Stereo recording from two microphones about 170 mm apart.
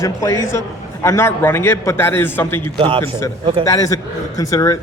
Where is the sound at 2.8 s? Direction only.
30° right (ahead or behind).